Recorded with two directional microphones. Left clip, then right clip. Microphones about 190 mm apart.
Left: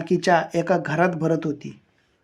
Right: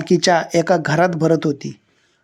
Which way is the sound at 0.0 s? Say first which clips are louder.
Right 4 dB; 25° right (ahead or behind).